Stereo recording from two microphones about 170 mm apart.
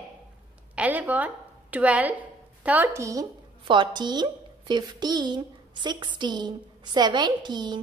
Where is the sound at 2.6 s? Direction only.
10° right (ahead or behind).